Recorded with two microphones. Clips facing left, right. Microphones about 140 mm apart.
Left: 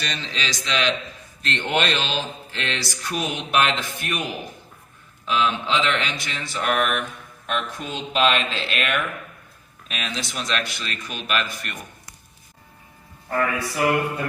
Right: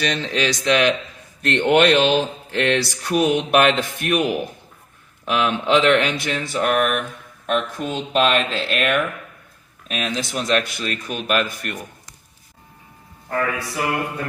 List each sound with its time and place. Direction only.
0.0 s speech: 60° right (ahead or behind)
13.2 s a man's voice: centre (ahead or behind)